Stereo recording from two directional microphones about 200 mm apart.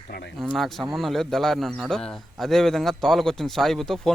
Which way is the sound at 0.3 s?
Centre (ahead or behind).